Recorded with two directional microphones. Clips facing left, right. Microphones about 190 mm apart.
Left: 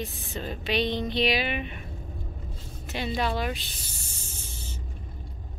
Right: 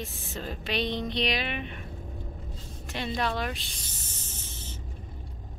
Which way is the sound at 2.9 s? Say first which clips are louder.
Left 2 dB; centre (ahead or behind).